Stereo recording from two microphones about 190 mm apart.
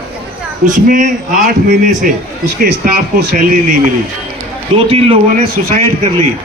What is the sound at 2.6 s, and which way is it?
Speech, 55° right (ahead or behind).